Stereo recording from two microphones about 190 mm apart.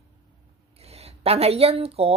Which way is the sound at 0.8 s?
35° right (ahead or behind).